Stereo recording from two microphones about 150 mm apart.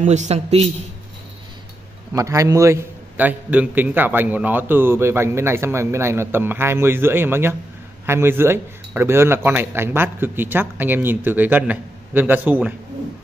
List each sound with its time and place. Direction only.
0.0 s a man's voice: 50° right (ahead or behind)
2.1 s a man's voice: 20° right (ahead or behind)